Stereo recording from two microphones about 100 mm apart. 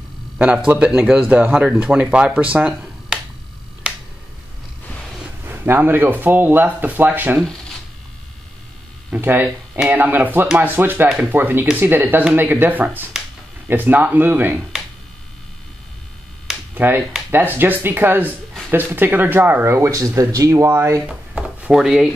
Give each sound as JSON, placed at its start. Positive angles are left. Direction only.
{"t": 0.7, "sound": "speech", "side_deg": -10}
{"t": 5.4, "sound": "speech", "side_deg": -20}
{"t": 9.1, "sound": "speech", "side_deg": -20}
{"t": 16.7, "sound": "speech", "side_deg": -20}
{"t": 21.1, "sound": "a sound", "side_deg": -10}